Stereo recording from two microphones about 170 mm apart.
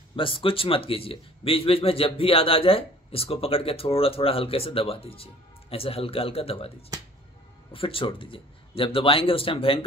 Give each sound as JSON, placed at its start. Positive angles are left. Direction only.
{"t": 0.1, "sound": "speech", "side_deg": 30}
{"t": 7.7, "sound": "speech", "side_deg": 30}